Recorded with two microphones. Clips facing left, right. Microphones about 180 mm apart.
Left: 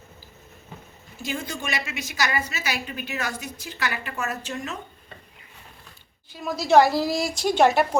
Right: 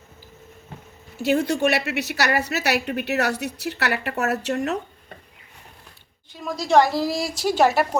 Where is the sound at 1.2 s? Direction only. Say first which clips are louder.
Right 11 dB; 65° right (ahead or behind).